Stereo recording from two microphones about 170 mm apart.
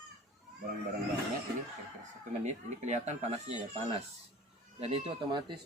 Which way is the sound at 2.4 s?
45° right (ahead or behind).